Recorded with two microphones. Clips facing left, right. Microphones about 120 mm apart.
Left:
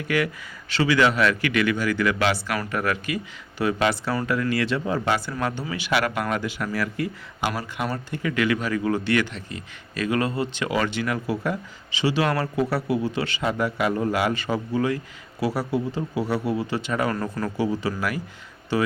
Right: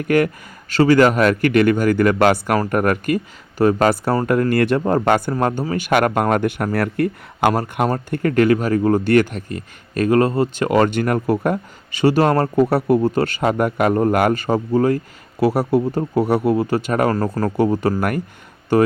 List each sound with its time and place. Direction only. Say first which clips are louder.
0.0 s speech: right 8 dB; 50° right (ahead or behind)